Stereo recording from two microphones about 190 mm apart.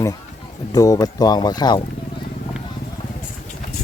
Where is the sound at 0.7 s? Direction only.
20° left (ahead or behind).